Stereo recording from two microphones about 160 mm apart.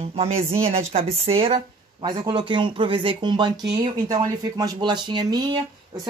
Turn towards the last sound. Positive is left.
turn(degrees=-30)  # may be behind; listen again after turning